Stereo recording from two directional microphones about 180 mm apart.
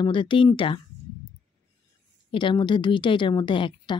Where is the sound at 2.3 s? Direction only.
30° left (ahead or behind).